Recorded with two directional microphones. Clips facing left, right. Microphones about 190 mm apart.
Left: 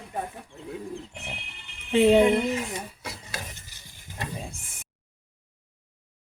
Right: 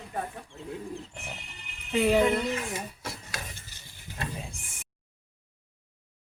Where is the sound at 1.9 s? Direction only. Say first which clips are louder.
Left 5 dB; 25° left (ahead or behind).